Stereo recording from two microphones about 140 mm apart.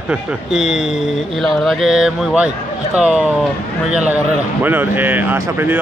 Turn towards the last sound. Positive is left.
turn(degrees=-15)  # may be behind; listen again after turning